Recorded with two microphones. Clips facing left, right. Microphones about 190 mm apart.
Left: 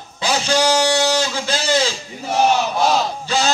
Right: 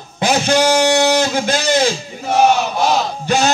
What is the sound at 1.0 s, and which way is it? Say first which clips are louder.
Guitar: right 5 dB; 55° right (ahead or behind).